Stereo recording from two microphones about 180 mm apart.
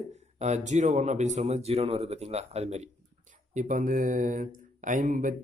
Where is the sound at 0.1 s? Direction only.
40° right (ahead or behind).